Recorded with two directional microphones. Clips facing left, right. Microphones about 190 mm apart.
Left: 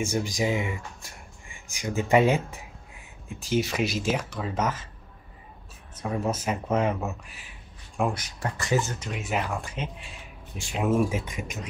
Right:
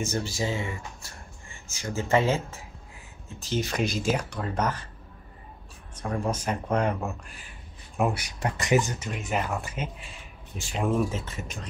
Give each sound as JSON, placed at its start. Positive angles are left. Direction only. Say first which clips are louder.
{"t": 0.0, "sound": "speech", "louder": "left 3 dB", "side_deg": 15}
{"t": 5.9, "sound": "speech", "louder": "left 1 dB", "side_deg": 5}
{"t": 8.0, "sound": "speech", "louder": "right 1 dB", "side_deg": -10}
{"t": 9.1, "sound": "speech", "louder": "even", "side_deg": 0}